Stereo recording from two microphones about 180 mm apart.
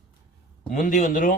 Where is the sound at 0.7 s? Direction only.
45° left (ahead or behind).